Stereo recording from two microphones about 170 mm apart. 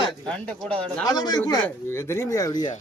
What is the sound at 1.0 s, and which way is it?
A man's voice, 25° left (ahead or behind).